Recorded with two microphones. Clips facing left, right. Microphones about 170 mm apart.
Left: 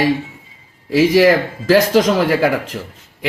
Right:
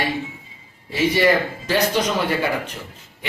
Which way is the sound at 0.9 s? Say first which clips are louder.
Left 7 dB; 90° left.